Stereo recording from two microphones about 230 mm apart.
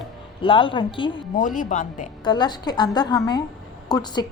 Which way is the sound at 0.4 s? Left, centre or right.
Left.